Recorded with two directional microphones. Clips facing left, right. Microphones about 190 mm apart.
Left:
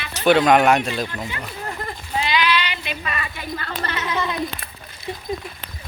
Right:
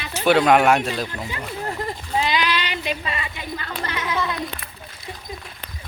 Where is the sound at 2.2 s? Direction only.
45° right (ahead or behind).